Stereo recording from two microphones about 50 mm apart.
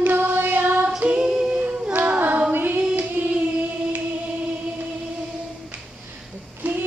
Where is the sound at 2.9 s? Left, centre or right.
Right.